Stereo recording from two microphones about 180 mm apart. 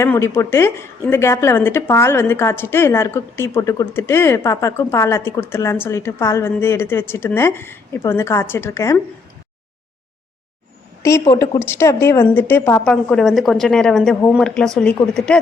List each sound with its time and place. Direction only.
0.0 s a woman's voice: 15° left (ahead or behind)
11.0 s a woman's voice: 15° left (ahead or behind)